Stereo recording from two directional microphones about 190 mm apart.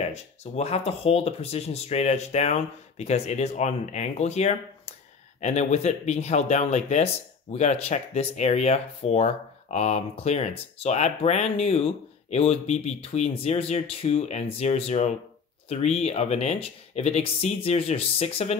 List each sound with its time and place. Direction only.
0.1 s speech: 35° left (ahead or behind)